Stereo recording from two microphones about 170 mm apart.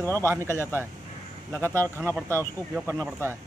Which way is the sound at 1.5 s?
15° right (ahead or behind).